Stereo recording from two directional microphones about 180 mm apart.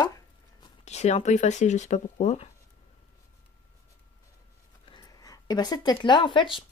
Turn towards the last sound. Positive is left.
turn(degrees=25)  # may be behind; listen again after turning